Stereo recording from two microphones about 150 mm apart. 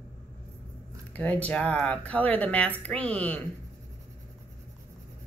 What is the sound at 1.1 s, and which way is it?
Speech, 10° left (ahead or behind).